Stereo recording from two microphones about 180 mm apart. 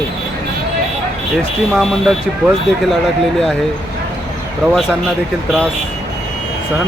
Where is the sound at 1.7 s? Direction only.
Centre (ahead or behind).